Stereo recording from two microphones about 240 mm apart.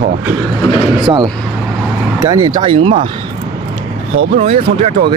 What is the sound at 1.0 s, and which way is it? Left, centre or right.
Speech, centre.